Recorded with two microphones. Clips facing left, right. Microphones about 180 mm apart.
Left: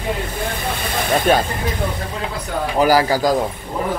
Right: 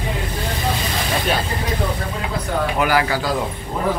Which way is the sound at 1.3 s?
50° left (ahead or behind).